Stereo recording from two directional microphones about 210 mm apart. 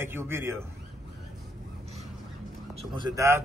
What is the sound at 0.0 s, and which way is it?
Speech, 10° right (ahead or behind).